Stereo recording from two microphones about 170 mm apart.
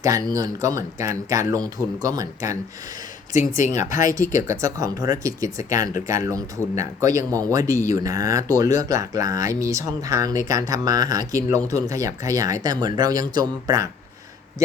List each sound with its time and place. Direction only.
0.3 s speech: 20° right (ahead or behind)
3.6 s speech: 45° left (ahead or behind)
4.1 s speech: 20° right (ahead or behind)